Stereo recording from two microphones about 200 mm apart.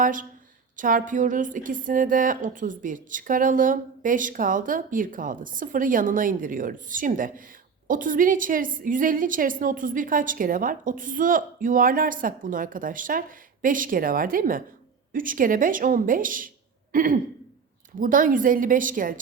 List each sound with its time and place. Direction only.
0.0 s a woman's voice: 40° right (ahead or behind)